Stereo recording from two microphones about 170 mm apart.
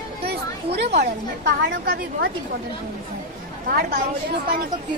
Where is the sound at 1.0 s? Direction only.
60° right (ahead or behind).